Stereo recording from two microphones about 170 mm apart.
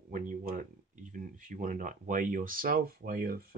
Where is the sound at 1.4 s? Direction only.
50° right (ahead or behind).